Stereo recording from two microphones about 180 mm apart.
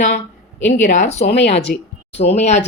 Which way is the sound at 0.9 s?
40° left (ahead or behind).